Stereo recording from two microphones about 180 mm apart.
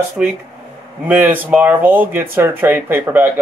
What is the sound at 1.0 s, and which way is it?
Speech, 10° right (ahead or behind).